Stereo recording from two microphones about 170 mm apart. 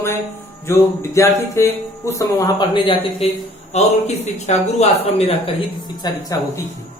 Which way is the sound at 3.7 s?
40° left (ahead or behind).